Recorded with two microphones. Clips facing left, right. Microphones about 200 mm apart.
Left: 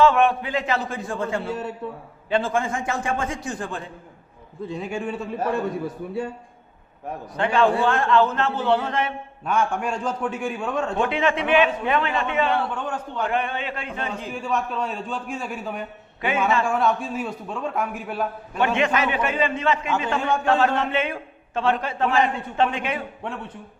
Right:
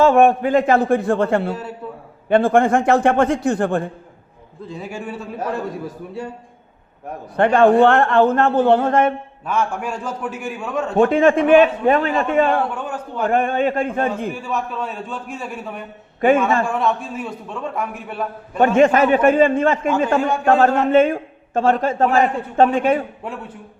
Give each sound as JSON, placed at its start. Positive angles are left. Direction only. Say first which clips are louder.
{"t": 0.0, "sound": "a man's voice", "louder": "right 5 dB", "side_deg": -45}
{"t": 4.7, "sound": "a man's voice", "louder": "left 1 dB", "side_deg": -5}
{"t": 7.3, "sound": "a man's voice", "louder": "right 8 dB", "side_deg": -55}
{"t": 9.5, "sound": "a man's voice", "louder": "right 1 dB", "side_deg": -5}
{"t": 10.9, "sound": "a man's voice", "louder": "right 11 dB", "side_deg": -45}
{"t": 12.7, "sound": "a man's voice", "louder": "right 2 dB", "side_deg": -10}
{"t": 13.2, "sound": "a man's voice", "louder": "right 10 dB", "side_deg": -45}
{"t": 14.3, "sound": "a man's voice", "louder": "right 1 dB", "side_deg": -5}
{"t": 18.6, "sound": "a man's voice", "louder": "right 8 dB", "side_deg": -45}